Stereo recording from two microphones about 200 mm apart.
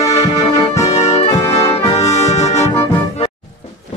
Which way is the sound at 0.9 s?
30° left (ahead or behind).